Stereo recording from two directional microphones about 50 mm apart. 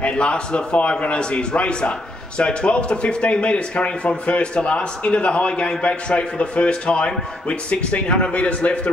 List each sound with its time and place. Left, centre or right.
0.2 s a man's voice: centre